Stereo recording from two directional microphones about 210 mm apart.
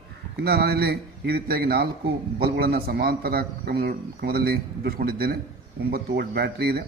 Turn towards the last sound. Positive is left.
turn(degrees=-50)  # may be behind; listen again after turning